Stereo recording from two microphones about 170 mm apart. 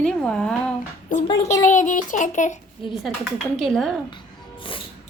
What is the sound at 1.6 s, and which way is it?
Speech, 50° left (ahead or behind).